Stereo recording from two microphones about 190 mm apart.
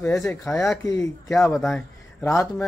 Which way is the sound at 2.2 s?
15° left (ahead or behind).